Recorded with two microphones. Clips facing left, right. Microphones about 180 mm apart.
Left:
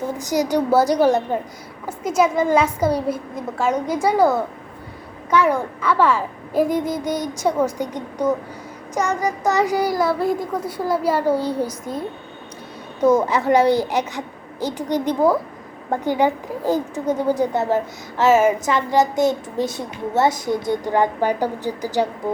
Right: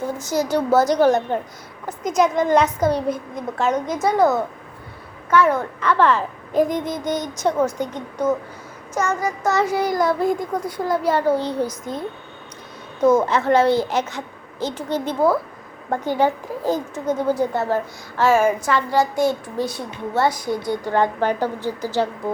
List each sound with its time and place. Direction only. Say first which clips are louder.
0.2 s a child's voice: left 2 dB; 15° left (ahead or behind)